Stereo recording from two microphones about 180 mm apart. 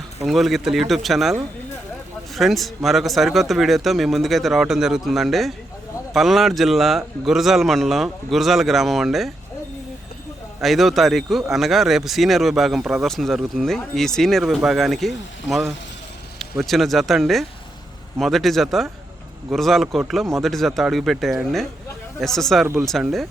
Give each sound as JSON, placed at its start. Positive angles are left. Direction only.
{"t": 0.2, "sound": "speech", "side_deg": 0}
{"t": 10.6, "sound": "speech", "side_deg": 0}